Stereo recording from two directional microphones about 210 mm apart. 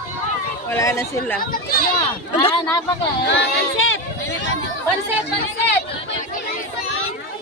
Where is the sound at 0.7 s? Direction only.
15° left (ahead or behind).